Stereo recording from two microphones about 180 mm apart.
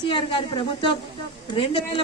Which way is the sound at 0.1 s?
30° left (ahead or behind).